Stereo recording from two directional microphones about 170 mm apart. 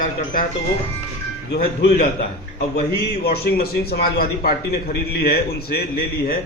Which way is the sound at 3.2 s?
65° left (ahead or behind).